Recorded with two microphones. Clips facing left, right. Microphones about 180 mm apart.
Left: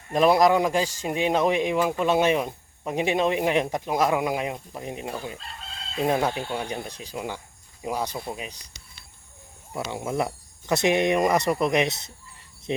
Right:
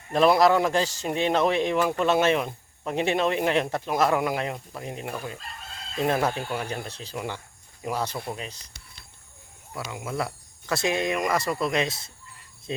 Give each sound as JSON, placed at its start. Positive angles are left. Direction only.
{"t": 0.1, "sound": "a man's voice", "side_deg": 15}
{"t": 6.7, "sound": "a man's voice", "side_deg": 15}
{"t": 9.9, "sound": "speech", "side_deg": 25}